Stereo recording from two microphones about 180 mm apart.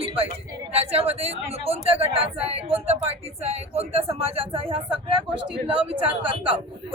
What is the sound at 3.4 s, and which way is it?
Speech, 35° right (ahead or behind).